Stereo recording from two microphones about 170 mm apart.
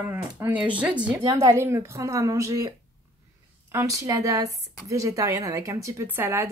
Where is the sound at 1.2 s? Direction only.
20° right (ahead or behind).